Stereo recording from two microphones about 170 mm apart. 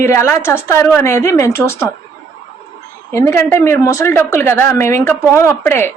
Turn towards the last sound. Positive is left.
turn(degrees=15)  # may be behind; listen again after turning